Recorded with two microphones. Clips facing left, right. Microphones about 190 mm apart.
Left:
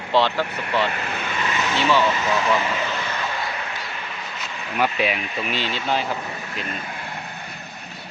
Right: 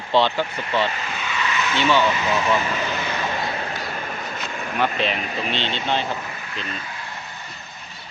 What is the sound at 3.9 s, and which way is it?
Vehicle, 45° right (ahead or behind).